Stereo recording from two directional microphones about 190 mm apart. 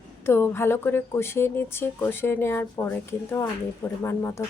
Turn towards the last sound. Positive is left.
turn(degrees=15)  # may be behind; listen again after turning